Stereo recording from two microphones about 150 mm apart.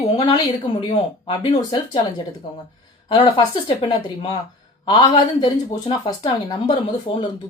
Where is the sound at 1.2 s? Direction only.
35° left (ahead or behind).